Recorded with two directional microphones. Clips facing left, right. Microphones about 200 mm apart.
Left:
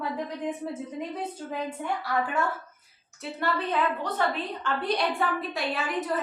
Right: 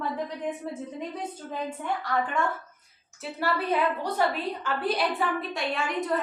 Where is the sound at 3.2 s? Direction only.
5° right (ahead or behind).